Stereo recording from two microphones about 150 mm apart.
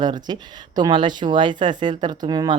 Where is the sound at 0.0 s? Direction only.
30° right (ahead or behind).